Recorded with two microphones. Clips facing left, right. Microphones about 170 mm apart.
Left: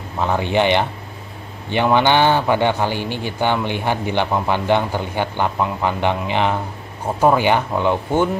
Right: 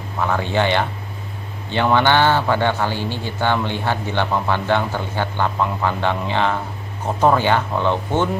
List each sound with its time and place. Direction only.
0.2 s a man's voice: 20° left (ahead or behind)